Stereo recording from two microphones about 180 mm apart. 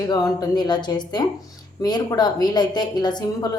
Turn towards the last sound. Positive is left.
turn(degrees=25)  # may be behind; listen again after turning